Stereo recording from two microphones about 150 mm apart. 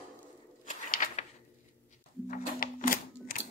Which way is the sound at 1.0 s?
45° left (ahead or behind).